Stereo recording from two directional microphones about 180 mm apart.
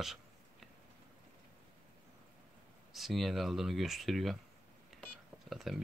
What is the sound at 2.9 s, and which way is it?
Speech, centre (ahead or behind).